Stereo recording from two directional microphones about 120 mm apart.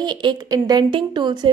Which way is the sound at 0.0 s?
40° right (ahead or behind).